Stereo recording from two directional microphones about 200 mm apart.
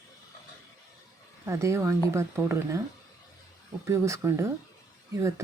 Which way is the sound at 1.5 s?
15° right (ahead or behind).